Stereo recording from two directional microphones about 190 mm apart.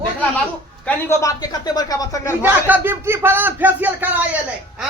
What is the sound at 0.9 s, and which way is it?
Speech, 15° left (ahead or behind).